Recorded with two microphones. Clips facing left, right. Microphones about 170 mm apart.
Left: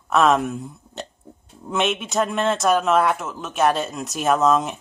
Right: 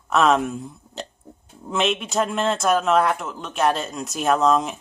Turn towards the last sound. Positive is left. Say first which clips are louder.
# even
turn(degrees=0)  # may be behind; listen again after turning